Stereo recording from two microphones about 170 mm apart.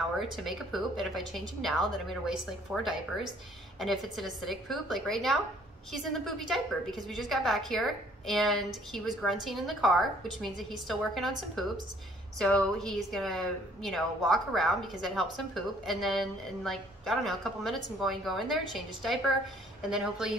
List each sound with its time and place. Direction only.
0.2 s a woman's voice: centre (ahead or behind)